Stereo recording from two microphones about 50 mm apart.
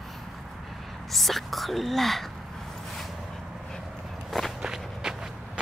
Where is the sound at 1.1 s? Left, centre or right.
Centre.